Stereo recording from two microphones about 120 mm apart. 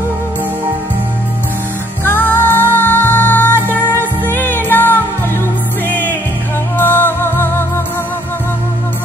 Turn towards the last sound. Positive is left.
turn(degrees=20)  # may be behind; listen again after turning